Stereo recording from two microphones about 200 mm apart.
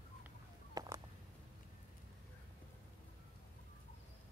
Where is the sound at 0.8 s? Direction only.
20° right (ahead or behind).